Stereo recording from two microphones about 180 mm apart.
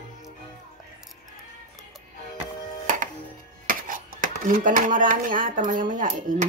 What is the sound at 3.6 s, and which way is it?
Speech, 50° right (ahead or behind).